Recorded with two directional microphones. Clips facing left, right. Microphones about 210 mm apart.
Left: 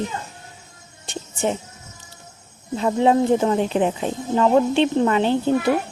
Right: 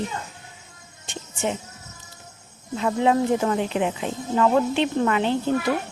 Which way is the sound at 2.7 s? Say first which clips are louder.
Left 3 dB; 30° left (ahead or behind).